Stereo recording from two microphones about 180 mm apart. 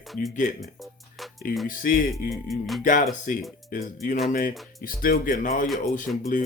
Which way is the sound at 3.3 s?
45° left (ahead or behind).